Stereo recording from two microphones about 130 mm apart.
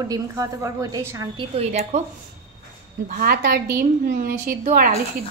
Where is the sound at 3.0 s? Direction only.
90° right.